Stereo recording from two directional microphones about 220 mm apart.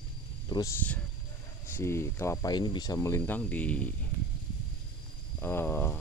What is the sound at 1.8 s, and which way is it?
Speech, 10° left (ahead or behind).